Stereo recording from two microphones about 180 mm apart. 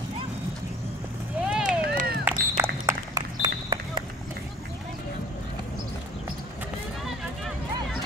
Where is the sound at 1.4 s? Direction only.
5° right (ahead or behind).